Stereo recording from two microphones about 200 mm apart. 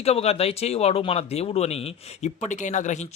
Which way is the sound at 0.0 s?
30° left (ahead or behind).